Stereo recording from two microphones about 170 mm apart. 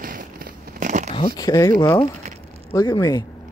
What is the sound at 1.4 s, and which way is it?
Speech, 20° left (ahead or behind).